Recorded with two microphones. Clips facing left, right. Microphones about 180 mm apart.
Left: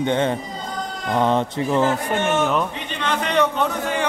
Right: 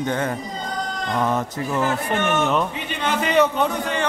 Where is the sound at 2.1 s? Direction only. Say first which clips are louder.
Left 1 dB; 10° left (ahead or behind).